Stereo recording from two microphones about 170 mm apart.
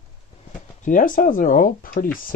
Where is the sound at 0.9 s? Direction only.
50° left (ahead or behind).